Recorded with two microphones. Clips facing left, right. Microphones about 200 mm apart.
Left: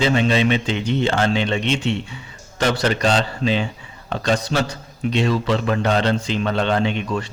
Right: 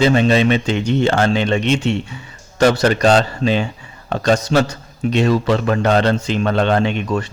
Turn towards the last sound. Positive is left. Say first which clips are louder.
# right 3 dB
turn(degrees=-50)  # may be behind; listen again after turning